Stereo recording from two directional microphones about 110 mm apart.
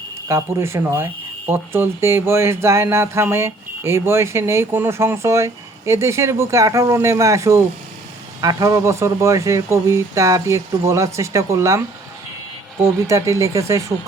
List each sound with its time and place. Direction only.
0.3 s speech: 25° right (ahead or behind)
12.8 s speech: 30° right (ahead or behind)